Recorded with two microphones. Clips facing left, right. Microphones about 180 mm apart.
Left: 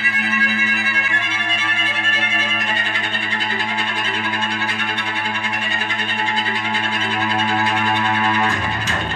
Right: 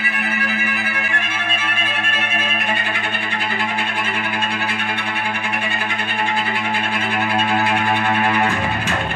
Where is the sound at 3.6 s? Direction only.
55° right (ahead or behind).